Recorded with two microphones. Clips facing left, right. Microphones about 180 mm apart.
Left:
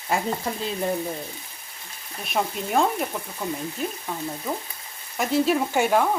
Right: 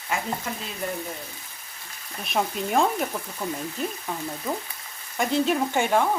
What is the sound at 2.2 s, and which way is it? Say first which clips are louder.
Stir: even; centre (ahead or behind).